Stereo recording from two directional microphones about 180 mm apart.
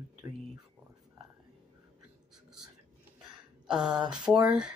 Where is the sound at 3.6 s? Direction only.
5° right (ahead or behind).